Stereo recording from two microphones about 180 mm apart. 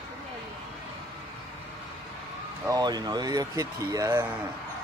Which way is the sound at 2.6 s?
20° right (ahead or behind).